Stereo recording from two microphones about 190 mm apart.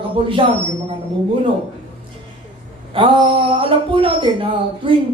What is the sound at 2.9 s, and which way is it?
A man's voice, 25° right (ahead or behind).